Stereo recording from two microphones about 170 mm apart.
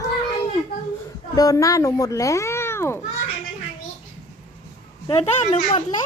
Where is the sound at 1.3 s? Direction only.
20° left (ahead or behind).